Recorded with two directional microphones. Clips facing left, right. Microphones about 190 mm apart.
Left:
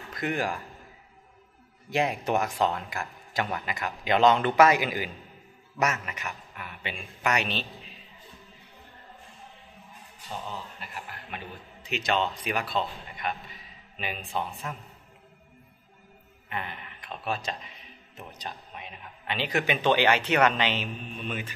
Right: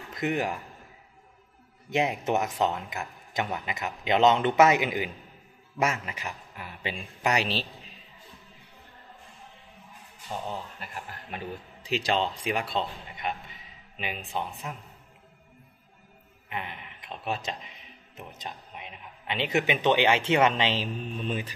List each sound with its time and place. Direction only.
0.1 s a man's voice: 20° right (ahead or behind)
1.9 s a man's voice: 20° right (ahead or behind)
10.8 s a man's voice: 35° right (ahead or behind); by 14.8 s 15° right (ahead or behind)
16.4 s speech: 15° right (ahead or behind); by 21.5 s 30° right (ahead or behind)